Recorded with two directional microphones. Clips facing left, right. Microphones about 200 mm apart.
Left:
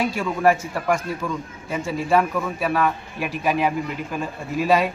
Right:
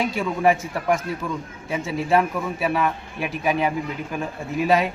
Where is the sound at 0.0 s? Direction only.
Centre (ahead or behind).